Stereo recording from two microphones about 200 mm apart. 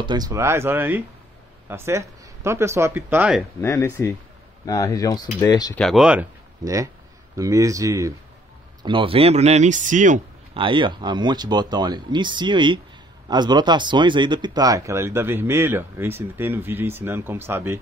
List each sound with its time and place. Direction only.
0.0 s speech: 20° right (ahead or behind)
3.6 s speech: 15° left (ahead or behind)
5.8 s speech: centre (ahead or behind)
6.6 s speech: 15° right (ahead or behind); by 10.6 s 40° right (ahead or behind)
10.6 s speech: 25° right (ahead or behind)